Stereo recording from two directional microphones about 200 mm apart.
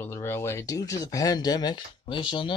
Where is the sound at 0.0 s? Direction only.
10° left (ahead or behind).